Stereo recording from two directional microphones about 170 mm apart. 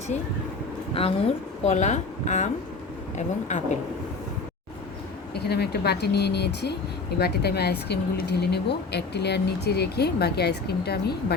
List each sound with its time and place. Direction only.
0.9 s speech: 35° left (ahead or behind)
3.5 s speech: 45° left (ahead or behind)
5.3 s speech: 70° left (ahead or behind)